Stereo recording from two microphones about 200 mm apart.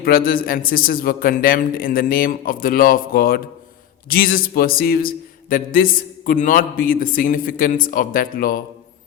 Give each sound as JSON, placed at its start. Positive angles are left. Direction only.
{"t": 0.0, "sound": "a man's voice", "side_deg": 45}